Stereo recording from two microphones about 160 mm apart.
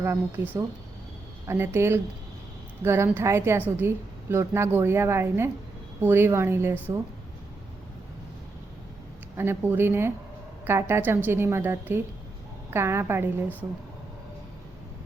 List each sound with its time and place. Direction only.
1.5 s a woman's voice: 15° right (ahead or behind)
9.4 s a woman's voice: 15° right (ahead or behind)